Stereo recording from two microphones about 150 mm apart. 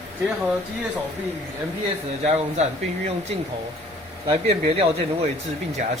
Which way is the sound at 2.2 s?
50° right (ahead or behind).